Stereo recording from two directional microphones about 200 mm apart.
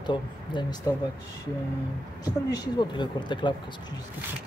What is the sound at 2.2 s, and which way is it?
Speech, 20° left (ahead or behind).